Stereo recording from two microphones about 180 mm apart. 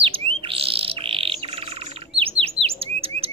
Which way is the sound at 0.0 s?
30° right (ahead or behind).